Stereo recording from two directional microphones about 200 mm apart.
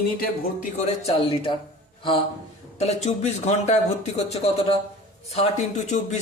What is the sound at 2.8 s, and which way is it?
A man's voice, 35° left (ahead or behind).